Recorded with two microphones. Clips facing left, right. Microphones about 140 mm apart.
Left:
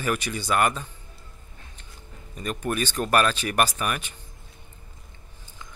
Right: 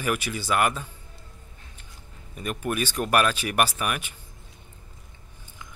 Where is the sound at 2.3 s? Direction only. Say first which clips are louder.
Left 1 dB; 10° right (ahead or behind).